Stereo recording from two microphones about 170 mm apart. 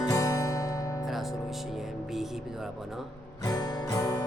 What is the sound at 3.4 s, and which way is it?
Music, 25° left (ahead or behind).